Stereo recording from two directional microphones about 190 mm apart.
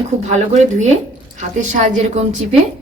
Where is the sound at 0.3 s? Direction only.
40° right (ahead or behind).